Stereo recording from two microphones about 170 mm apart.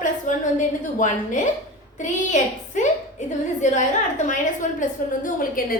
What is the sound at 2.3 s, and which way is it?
Speech, 45° left (ahead or behind).